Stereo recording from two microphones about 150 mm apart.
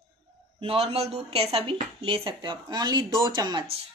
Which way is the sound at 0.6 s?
40° right (ahead or behind).